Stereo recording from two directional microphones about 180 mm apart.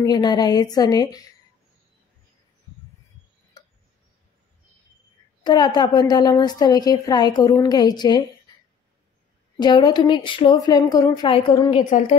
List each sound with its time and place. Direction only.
0.0 s a woman's voice: 25° left (ahead or behind)
5.4 s a woman's voice: 25° left (ahead or behind)
9.6 s a woman's voice: 25° left (ahead or behind)